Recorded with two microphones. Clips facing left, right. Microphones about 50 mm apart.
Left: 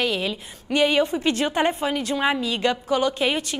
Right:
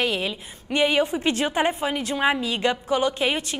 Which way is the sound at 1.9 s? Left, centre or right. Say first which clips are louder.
Even; centre.